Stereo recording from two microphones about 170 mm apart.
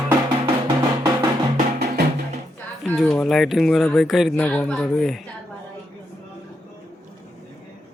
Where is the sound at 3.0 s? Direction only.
5° left (ahead or behind).